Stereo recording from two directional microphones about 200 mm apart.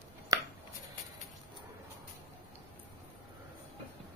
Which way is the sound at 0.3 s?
20° right (ahead or behind).